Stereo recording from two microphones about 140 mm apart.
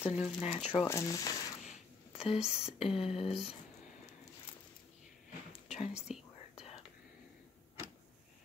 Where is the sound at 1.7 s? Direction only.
45° left (ahead or behind).